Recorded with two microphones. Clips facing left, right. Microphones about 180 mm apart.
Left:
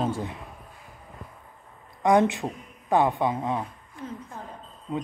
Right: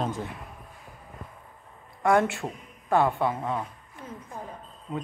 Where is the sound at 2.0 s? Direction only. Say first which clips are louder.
Left 2 dB; 20° left (ahead or behind).